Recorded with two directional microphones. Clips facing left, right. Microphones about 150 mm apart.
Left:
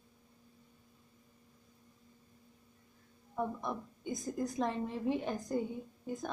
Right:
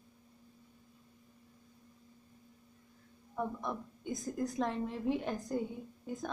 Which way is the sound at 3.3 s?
5° left (ahead or behind).